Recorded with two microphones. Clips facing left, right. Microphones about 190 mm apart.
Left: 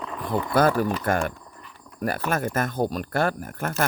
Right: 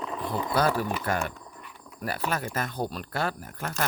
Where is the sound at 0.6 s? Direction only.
50° left (ahead or behind).